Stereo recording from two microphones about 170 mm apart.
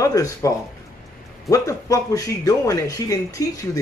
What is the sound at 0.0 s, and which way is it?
Speech, 20° left (ahead or behind).